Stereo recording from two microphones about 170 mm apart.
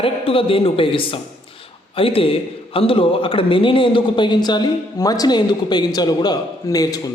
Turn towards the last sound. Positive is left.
turn(degrees=20)  # may be behind; listen again after turning